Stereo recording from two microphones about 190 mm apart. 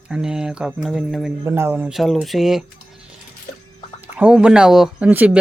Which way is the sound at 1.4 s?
15° right (ahead or behind).